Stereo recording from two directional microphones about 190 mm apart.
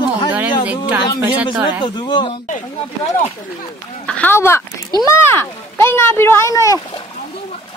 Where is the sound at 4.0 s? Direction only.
5° left (ahead or behind).